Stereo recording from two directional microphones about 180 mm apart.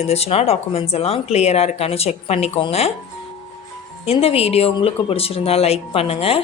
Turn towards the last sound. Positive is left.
turn(degrees=35)  # may be behind; listen again after turning